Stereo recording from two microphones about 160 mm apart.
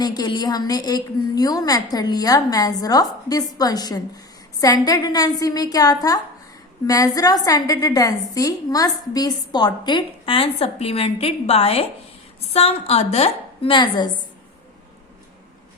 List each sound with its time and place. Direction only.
0.0 s a woman's voice: 25° left (ahead or behind)